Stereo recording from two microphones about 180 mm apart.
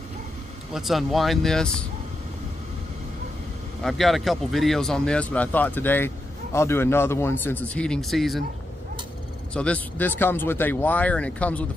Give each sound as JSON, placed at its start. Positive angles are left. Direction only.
{"t": 0.7, "sound": "speech", "side_deg": 0}
{"t": 3.8, "sound": "speech", "side_deg": 0}
{"t": 9.5, "sound": "speech", "side_deg": 5}